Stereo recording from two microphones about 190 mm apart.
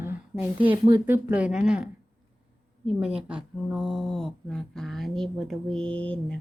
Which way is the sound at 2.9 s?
5° right (ahead or behind).